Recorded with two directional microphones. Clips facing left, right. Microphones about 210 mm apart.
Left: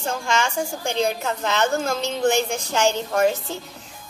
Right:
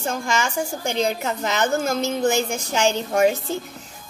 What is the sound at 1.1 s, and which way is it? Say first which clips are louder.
Speech: even; 20° right (ahead or behind).